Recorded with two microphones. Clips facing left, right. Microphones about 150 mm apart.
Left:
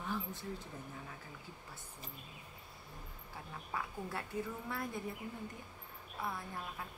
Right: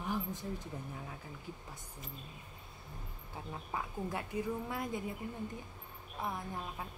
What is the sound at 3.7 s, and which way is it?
A woman's voice, 15° right (ahead or behind).